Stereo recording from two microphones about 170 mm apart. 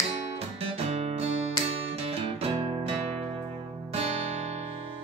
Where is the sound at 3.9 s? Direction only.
35° right (ahead or behind).